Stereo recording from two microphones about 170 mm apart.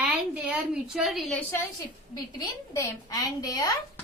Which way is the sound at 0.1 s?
5° right (ahead or behind).